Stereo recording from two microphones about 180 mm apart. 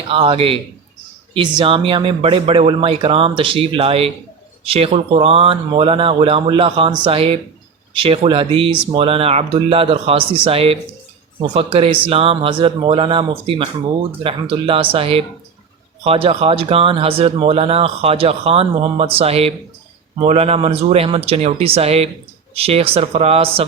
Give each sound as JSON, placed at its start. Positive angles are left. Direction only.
{"t": 0.1, "sound": "speech", "side_deg": -30}